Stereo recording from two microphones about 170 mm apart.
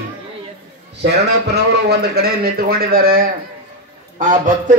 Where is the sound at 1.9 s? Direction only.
65° right (ahead or behind).